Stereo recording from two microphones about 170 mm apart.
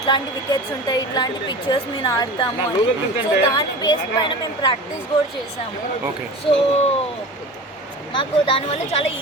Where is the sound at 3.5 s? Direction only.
25° left (ahead or behind).